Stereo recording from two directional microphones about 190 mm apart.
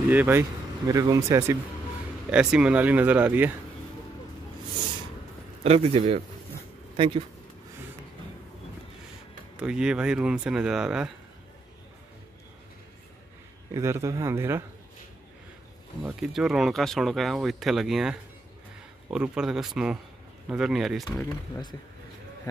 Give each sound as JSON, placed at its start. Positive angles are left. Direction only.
{"t": 0.1, "sound": "speech", "side_deg": -10}
{"t": 2.3, "sound": "speech", "side_deg": -5}
{"t": 5.6, "sound": "a man's voice", "side_deg": -30}
{"t": 9.6, "sound": "speech", "side_deg": -5}
{"t": 13.7, "sound": "speech", "side_deg": -15}
{"t": 16.0, "sound": "speech", "side_deg": -5}
{"t": 21.3, "sound": "speech", "side_deg": 25}